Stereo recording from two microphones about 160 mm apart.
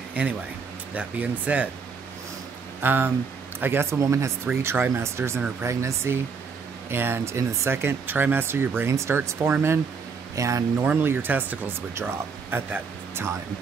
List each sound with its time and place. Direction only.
0.2 s speech: 10° right (ahead or behind)
2.8 s speech: 15° right (ahead or behind)